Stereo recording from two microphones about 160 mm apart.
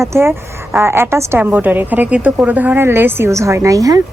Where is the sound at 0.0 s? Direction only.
15° right (ahead or behind).